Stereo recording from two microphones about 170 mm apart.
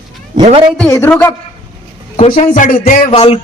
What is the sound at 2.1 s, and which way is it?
Speech, 45° left (ahead or behind).